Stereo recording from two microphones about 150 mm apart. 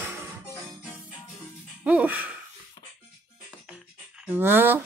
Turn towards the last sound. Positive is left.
turn(degrees=-15)  # may be behind; listen again after turning